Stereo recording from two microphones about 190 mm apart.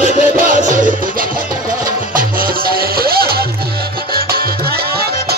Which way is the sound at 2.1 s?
50° right (ahead or behind).